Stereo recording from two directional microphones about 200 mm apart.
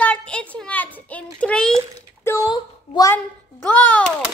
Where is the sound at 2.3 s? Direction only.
15° left (ahead or behind); by 4.3 s centre (ahead or behind).